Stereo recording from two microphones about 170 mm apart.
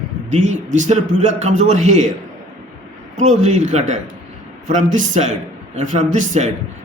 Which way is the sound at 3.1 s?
45° right (ahead or behind).